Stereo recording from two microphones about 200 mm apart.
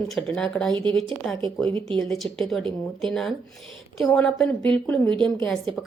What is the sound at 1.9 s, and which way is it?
A woman's voice, centre (ahead or behind).